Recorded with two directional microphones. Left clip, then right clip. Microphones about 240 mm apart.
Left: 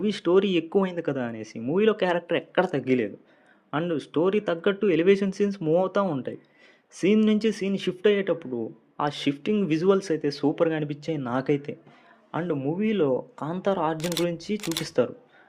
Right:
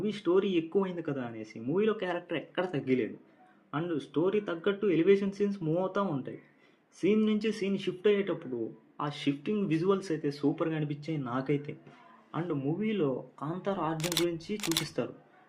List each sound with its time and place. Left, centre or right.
0.0 s speech: left
13.9 s speech: centre
14.3 s speech: left
14.5 s speech: centre
14.8 s speech: left